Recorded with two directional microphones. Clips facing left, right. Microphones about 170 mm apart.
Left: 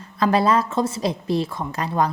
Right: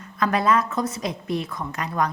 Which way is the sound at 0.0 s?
30° left (ahead or behind).